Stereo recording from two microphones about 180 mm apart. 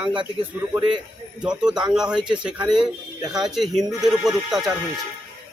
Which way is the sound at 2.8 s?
20° right (ahead or behind).